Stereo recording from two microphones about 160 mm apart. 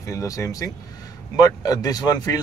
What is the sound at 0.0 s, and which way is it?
Speech, 20° left (ahead or behind).